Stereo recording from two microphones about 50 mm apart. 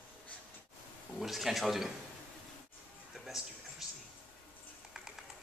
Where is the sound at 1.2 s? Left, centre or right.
Centre.